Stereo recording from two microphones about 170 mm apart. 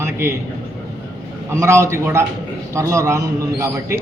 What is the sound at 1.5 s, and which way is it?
A man's voice, 15° right (ahead or behind).